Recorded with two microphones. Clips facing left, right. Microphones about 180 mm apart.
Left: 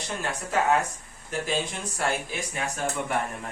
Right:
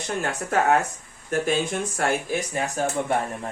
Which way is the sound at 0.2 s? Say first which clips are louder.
Right 3 dB; 50° right (ahead or behind).